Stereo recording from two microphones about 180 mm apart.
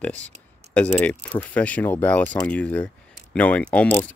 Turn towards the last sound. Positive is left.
turn(degrees=5)  # may be behind; listen again after turning